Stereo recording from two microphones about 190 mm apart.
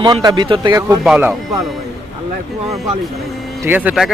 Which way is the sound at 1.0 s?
5° right (ahead or behind).